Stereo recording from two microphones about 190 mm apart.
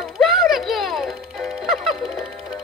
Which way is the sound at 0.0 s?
Centre (ahead or behind).